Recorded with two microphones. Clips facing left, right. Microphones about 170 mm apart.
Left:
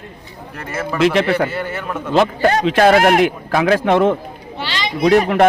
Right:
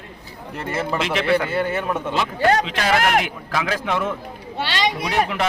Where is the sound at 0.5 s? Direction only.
25° right (ahead or behind).